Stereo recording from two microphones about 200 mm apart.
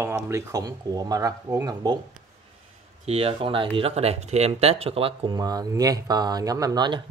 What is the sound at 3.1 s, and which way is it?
Speech, 30° right (ahead or behind).